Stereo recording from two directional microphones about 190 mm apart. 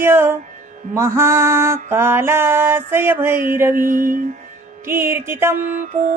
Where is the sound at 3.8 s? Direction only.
45° right (ahead or behind).